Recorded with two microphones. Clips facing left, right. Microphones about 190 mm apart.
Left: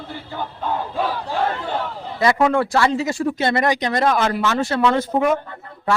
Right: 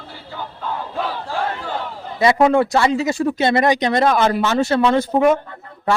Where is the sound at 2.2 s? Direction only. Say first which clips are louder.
Right 3 dB; 25° right (ahead or behind).